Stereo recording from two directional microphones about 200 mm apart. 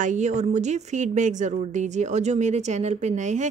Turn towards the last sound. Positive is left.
turn(degrees=-35)  # may be behind; listen again after turning